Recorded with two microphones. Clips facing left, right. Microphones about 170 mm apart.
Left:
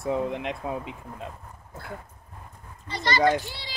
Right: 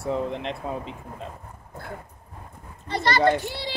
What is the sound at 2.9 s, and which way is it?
Speech, 60° right (ahead or behind).